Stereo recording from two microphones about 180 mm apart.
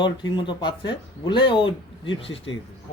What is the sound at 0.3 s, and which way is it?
A man's voice, 25° left (ahead or behind).